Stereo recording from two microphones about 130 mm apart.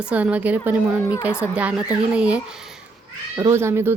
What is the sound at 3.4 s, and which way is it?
Speech, 20° right (ahead or behind).